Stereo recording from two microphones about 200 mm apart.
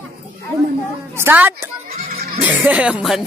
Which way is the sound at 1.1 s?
10° right (ahead or behind).